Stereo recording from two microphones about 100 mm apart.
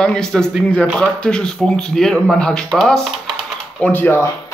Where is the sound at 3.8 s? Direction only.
20° left (ahead or behind).